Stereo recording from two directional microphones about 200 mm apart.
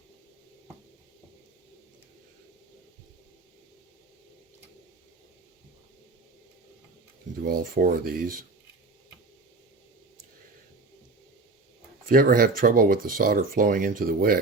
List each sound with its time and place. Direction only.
7.4 s speech: 45° right (ahead or behind)
12.0 s speech: 45° right (ahead or behind)